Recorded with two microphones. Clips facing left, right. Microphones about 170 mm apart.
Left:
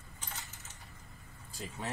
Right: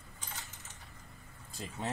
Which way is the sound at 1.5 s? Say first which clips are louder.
Right 1 dB; 20° right (ahead or behind).